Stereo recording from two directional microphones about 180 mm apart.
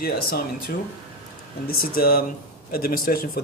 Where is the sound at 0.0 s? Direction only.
55° left (ahead or behind).